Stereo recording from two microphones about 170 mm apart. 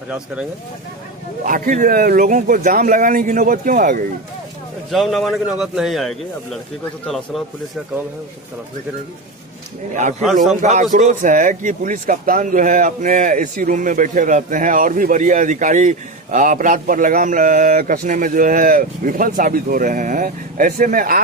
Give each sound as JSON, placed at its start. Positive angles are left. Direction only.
{"t": 1.4, "sound": "speech", "side_deg": -50}
{"t": 4.9, "sound": "a man's voice", "side_deg": 0}
{"t": 9.9, "sound": "speech", "side_deg": -45}